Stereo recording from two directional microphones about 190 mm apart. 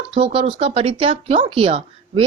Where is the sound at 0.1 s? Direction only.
30° right (ahead or behind).